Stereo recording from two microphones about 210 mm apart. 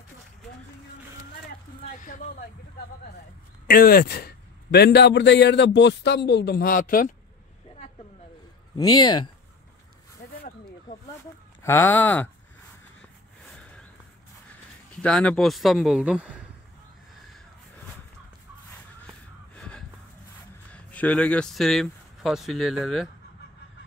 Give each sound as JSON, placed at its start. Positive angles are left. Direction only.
{"t": 3.6, "sound": "a man's voice", "side_deg": 45}
{"t": 8.7, "sound": "speech", "side_deg": 15}
{"t": 10.2, "sound": "a sound", "side_deg": 50}
{"t": 10.9, "sound": "snake", "side_deg": 20}
{"t": 11.6, "sound": "speech", "side_deg": 10}
{"t": 13.6, "sound": "a sound", "side_deg": 5}
{"t": 15.0, "sound": "a man's voice", "side_deg": 5}
{"t": 19.5, "sound": "a sound", "side_deg": 5}
{"t": 20.7, "sound": "speech", "side_deg": 5}